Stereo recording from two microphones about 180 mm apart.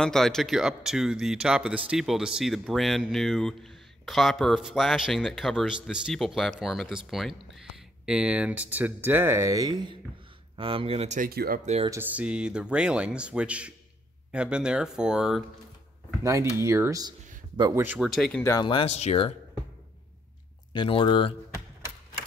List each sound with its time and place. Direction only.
0.0 s speech: 5° left (ahead or behind); by 11.2 s 40° right (ahead or behind)
11.2 s speech: 55° right (ahead or behind)
12.0 s speech: 10° right (ahead or behind)
16.2 s speech: 15° right (ahead or behind)
17.8 s speech: 5° right (ahead or behind)
18.4 s speech: 15° left (ahead or behind)
18.7 s speech: 30° left (ahead or behind)
20.7 s speech: 30° left (ahead or behind)